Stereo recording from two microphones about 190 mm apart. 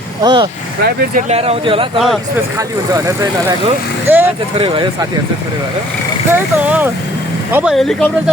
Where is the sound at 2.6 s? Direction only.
15° right (ahead or behind).